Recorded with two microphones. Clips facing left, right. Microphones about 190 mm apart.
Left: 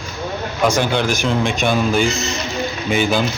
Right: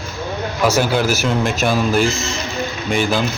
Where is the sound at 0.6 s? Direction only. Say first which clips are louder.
Right 1 dB; 5° right (ahead or behind).